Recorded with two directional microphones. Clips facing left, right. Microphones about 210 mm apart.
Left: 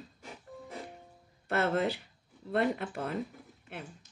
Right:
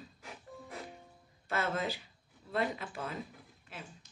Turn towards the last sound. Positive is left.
turn(degrees=65)  # may be behind; listen again after turning